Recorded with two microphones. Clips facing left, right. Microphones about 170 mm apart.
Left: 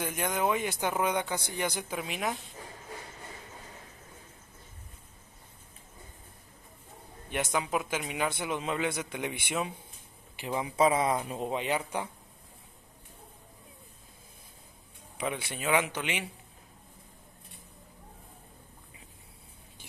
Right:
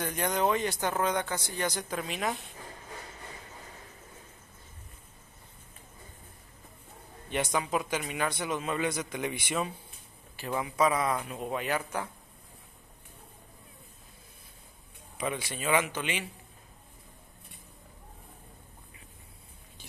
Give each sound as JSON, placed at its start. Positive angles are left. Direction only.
{"t": 0.1, "sound": "a man's voice", "side_deg": 5}
{"t": 7.2, "sound": "a man's voice", "side_deg": 10}
{"t": 15.2, "sound": "a man's voice", "side_deg": 15}